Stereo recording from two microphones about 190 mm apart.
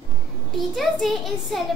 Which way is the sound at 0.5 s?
Centre (ahead or behind).